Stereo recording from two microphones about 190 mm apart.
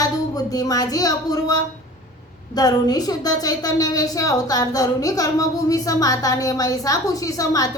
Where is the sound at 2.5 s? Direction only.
20° left (ahead or behind).